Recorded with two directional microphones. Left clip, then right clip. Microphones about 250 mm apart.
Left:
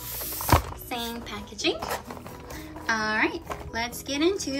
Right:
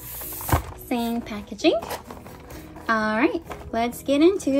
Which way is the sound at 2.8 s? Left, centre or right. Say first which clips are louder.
Right 3 dB; centre.